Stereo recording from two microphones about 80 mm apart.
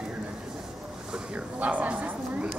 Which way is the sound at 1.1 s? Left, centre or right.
Centre.